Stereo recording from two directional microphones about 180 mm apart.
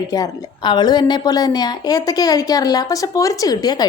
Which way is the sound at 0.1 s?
20° left (ahead or behind).